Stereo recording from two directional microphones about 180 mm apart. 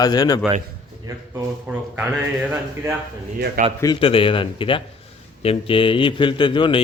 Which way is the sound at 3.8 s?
25° left (ahead or behind).